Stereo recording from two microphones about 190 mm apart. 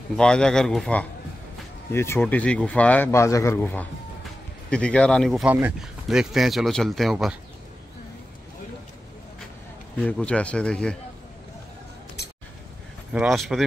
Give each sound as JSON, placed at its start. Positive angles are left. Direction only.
{"t": 0.1, "sound": "speech", "side_deg": 5}
{"t": 9.9, "sound": "speech", "side_deg": 5}
{"t": 12.2, "sound": "a sound", "side_deg": 60}
{"t": 13.1, "sound": "speech", "side_deg": -5}